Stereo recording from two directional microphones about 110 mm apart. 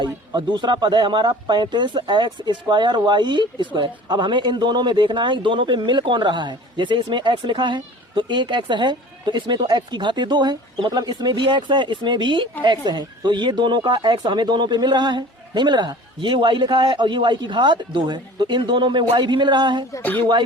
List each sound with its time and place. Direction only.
0.0 s speech: 45° right (ahead or behind)
19.9 s speech: 20° left (ahead or behind)